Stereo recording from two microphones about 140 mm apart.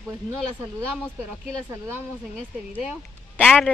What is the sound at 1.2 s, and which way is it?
Speech, 20° right (ahead or behind).